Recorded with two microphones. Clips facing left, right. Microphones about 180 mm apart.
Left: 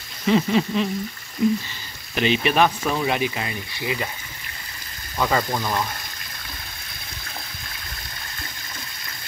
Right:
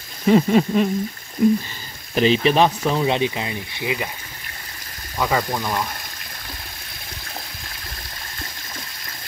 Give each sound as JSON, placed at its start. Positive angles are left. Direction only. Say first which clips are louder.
{"t": 0.3, "sound": "speech", "louder": "right 4 dB", "side_deg": -45}
{"t": 2.1, "sound": "speech", "louder": "right 3 dB", "side_deg": -35}
{"t": 5.2, "sound": "speech", "louder": "even", "side_deg": 0}